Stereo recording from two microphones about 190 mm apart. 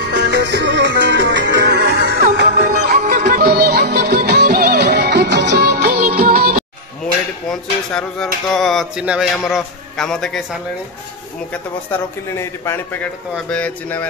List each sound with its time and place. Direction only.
0.0 s music: 65° right (ahead or behind)
3.0 s music: 45° right (ahead or behind)
7.9 s speech: centre (ahead or behind)
11.9 s speech: 10° left (ahead or behind)